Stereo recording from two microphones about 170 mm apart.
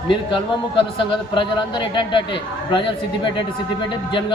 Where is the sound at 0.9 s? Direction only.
30° left (ahead or behind).